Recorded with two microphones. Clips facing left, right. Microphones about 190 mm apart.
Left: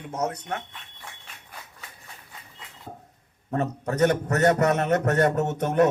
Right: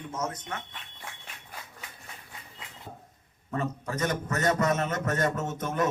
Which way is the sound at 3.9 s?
65° left (ahead or behind).